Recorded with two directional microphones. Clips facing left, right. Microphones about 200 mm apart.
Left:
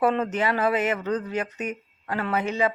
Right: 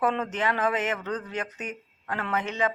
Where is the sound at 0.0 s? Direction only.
10° left (ahead or behind).